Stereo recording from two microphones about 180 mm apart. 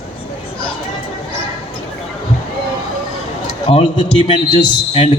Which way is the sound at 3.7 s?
30° left (ahead or behind).